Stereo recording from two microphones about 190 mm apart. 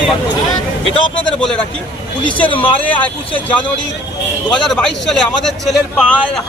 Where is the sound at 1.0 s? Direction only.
25° left (ahead or behind).